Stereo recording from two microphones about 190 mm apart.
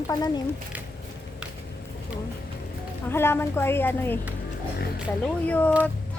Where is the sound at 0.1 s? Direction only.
20° left (ahead or behind).